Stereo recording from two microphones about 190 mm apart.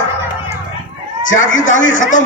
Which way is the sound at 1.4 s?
40° left (ahead or behind).